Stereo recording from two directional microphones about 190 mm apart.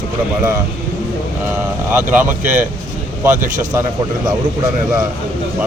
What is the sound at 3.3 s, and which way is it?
Speech, 40° right (ahead or behind).